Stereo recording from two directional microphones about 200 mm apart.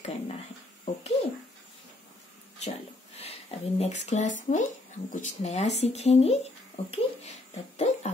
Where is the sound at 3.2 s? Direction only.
30° left (ahead or behind).